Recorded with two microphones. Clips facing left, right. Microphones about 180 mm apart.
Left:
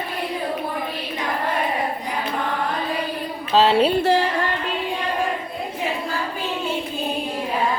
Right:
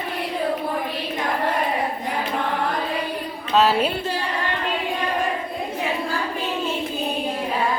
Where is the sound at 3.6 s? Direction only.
30° left (ahead or behind).